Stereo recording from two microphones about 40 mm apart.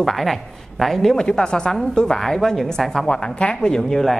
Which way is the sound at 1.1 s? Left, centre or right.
Centre.